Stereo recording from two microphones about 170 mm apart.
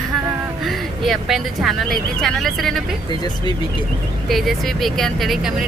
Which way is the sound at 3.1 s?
25° left (ahead or behind).